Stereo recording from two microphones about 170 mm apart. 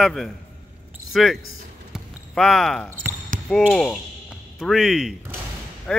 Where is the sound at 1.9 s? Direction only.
Centre (ahead or behind).